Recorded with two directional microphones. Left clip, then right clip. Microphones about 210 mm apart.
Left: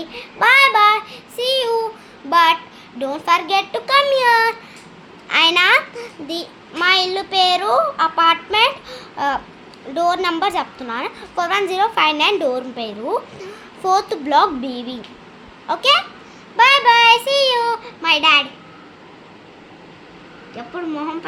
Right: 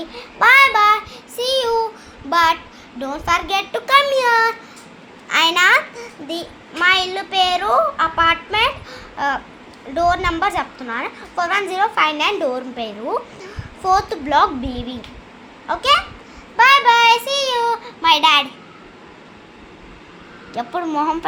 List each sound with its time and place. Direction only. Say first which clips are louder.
0.0 s child singing: right 1 dB; 15° left (ahead or behind)
3.0 s a woman's voice: left 2 dB; 15° left (ahead or behind); by 18.4 s 5° right (ahead or behind)
20.6 s speech: right 6 dB; 25° right (ahead or behind)